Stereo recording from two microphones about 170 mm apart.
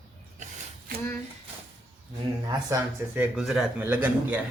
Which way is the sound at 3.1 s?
5° right (ahead or behind).